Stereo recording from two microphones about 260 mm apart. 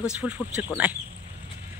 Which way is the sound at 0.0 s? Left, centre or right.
Centre.